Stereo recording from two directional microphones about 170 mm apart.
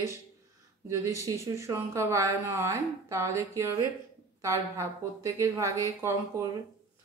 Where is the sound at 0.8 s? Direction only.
15° right (ahead or behind).